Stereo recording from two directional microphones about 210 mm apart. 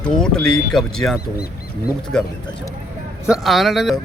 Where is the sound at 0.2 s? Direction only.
5° left (ahead or behind).